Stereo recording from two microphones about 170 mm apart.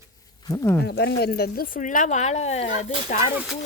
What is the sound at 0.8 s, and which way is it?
Speech, 75° left (ahead or behind).